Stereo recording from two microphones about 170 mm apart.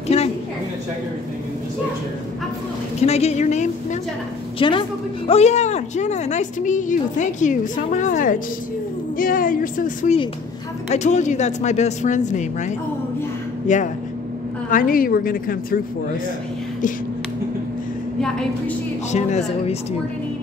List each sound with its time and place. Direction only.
0.1 s speech: 40° left (ahead or behind)
3.0 s speech: 40° left (ahead or behind)
4.6 s speech: 30° left (ahead or behind)
5.3 s a woman's voice: 40° left (ahead or behind)
19.1 s speech: 40° left (ahead or behind)